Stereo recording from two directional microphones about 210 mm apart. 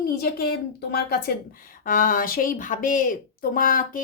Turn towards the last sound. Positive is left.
turn(degrees=40)  # may be behind; listen again after turning